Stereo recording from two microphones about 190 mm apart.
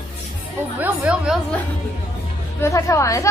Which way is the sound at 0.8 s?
5° right (ahead or behind).